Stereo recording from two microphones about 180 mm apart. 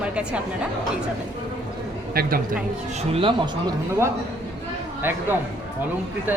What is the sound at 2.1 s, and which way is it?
Speech, 55° right (ahead or behind).